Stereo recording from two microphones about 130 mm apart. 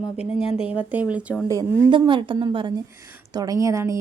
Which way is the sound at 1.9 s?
40° right (ahead or behind).